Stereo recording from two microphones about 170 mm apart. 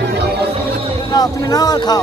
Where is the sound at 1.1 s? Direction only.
20° left (ahead or behind).